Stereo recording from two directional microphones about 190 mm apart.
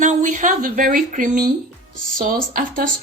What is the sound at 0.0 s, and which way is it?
Speech, 40° right (ahead or behind).